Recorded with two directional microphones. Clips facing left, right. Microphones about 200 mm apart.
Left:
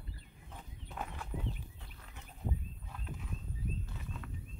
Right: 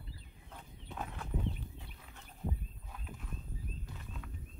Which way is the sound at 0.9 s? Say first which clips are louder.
Right 1 dB; 5° left (ahead or behind).